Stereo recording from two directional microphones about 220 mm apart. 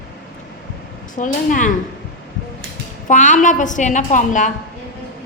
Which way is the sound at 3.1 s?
35° left (ahead or behind).